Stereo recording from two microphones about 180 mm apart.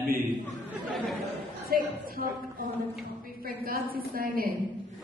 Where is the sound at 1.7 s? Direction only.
55° right (ahead or behind).